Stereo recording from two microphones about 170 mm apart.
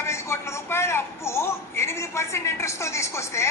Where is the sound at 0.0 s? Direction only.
15° left (ahead or behind).